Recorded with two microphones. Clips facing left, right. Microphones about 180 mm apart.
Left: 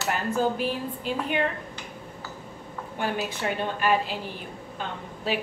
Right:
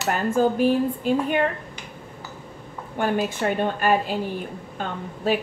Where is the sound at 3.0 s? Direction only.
50° right (ahead or behind).